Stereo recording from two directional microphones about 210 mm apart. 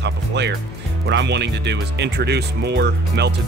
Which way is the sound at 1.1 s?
55° right (ahead or behind).